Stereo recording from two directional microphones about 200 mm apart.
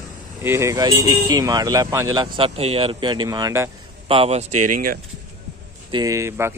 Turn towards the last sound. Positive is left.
turn(degrees=-15)  # may be behind; listen again after turning